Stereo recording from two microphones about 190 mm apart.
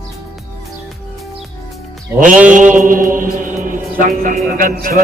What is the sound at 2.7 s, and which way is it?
Music, 45° right (ahead or behind).